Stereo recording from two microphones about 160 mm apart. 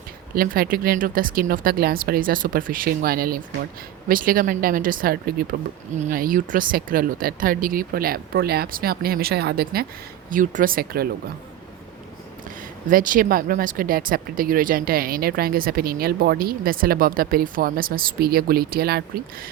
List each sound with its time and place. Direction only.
0.3 s speech: 65° right (ahead or behind); by 9.8 s 85° right
10.2 s speech: 55° right (ahead or behind)
12.9 s speech: 60° right (ahead or behind); by 19.5 s 75° right (ahead or behind)